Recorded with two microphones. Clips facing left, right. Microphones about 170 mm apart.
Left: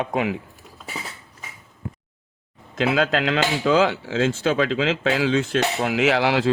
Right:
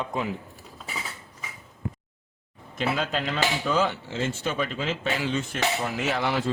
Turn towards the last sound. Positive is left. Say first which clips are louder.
# left 7 dB
turn(degrees=90)